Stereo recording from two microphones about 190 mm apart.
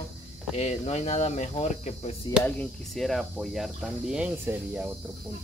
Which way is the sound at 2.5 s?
5° left (ahead or behind).